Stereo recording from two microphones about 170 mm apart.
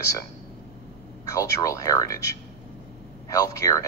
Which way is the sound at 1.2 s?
20° left (ahead or behind).